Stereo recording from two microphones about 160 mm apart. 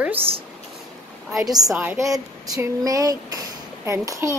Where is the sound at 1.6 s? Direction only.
5° right (ahead or behind).